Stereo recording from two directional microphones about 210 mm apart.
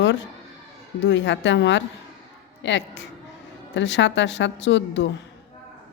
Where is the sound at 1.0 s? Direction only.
60° left (ahead or behind).